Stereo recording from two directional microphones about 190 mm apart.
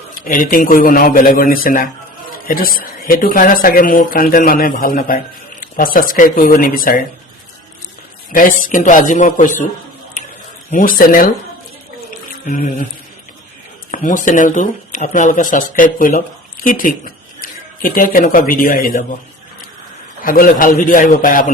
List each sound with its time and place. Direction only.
0.1 s speech: 45° left (ahead or behind)
8.3 s speech: 45° left (ahead or behind)
10.7 s speech: 45° left (ahead or behind)
12.5 s speech: 45° left (ahead or behind)
13.9 s speech: 45° left (ahead or behind)
20.2 s speech: 45° left (ahead or behind)